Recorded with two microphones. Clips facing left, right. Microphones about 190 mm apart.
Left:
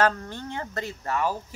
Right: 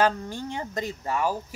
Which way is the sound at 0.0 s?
10° right (ahead or behind).